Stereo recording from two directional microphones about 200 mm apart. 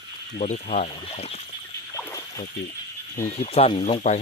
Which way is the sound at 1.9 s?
15° left (ahead or behind).